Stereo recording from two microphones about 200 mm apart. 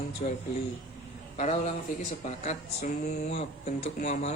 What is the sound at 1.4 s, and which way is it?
Speech, 30° left (ahead or behind).